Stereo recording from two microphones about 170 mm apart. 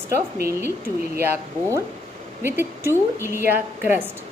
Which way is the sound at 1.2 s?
15° right (ahead or behind).